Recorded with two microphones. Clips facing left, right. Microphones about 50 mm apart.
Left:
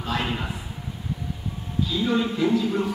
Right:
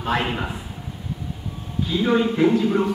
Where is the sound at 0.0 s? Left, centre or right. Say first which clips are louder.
Right 4 dB; right.